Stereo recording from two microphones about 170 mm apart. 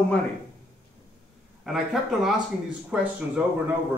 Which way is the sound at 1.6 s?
Centre (ahead or behind).